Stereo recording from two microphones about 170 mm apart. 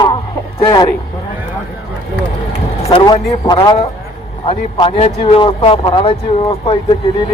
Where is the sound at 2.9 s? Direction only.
30° left (ahead or behind).